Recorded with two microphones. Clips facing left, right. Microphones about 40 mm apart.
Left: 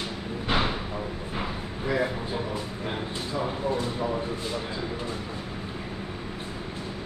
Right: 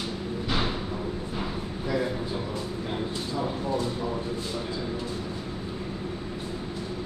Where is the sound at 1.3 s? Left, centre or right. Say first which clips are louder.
Even; left.